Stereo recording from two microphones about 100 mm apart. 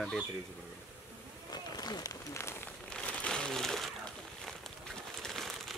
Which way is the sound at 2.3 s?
25° left (ahead or behind).